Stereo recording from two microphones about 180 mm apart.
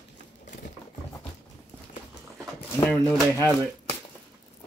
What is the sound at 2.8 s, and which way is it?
Speech, 5° left (ahead or behind).